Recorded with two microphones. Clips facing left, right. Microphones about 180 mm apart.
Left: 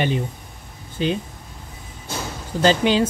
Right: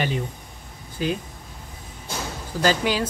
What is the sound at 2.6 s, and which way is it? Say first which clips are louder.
Speech: left 5 dB; 25° left (ahead or behind).